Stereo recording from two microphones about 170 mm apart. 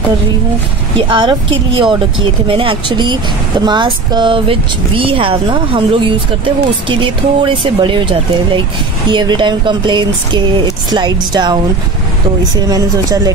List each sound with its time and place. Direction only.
0.9 s speech: 30° right (ahead or behind)
12.6 s speech: 20° right (ahead or behind)